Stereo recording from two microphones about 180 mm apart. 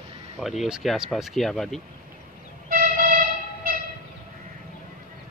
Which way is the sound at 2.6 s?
50° right (ahead or behind).